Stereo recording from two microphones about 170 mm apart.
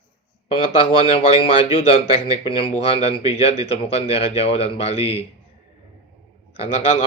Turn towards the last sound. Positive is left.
turn(degrees=35)  # may be behind; listen again after turning